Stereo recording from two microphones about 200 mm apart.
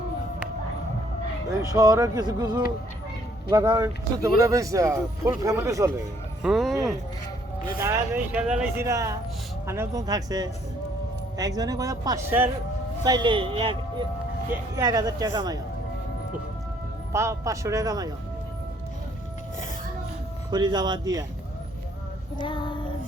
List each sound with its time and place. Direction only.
1.6 s speech: 15° right (ahead or behind)
6.4 s speech: centre (ahead or behind)
7.9 s speech: 10° right (ahead or behind)
13.1 s speech: 25° right (ahead or behind)
14.5 s speech: 15° right (ahead or behind)
17.1 s speech: 15° right (ahead or behind)
20.5 s speech: 20° right (ahead or behind)
22.4 s child singing: 25° left (ahead or behind)